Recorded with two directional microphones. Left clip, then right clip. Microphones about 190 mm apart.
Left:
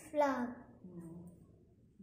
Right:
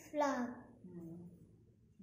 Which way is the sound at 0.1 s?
15° left (ahead or behind).